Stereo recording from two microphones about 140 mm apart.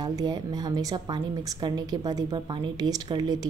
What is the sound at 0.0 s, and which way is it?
A woman's voice, 30° right (ahead or behind).